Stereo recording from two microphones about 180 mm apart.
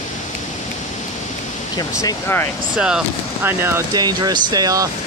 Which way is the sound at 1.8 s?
20° left (ahead or behind).